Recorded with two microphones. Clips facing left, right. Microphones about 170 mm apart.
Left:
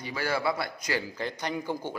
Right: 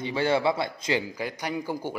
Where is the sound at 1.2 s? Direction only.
10° right (ahead or behind).